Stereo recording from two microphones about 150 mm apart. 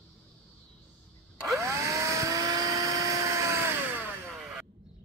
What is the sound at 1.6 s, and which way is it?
Vehicle, 20° right (ahead or behind).